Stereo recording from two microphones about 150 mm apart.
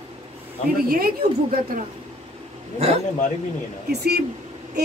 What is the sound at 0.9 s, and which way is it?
Speech, 75° right (ahead or behind).